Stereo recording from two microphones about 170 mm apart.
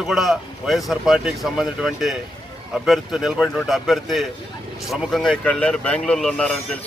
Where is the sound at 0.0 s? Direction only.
Centre (ahead or behind).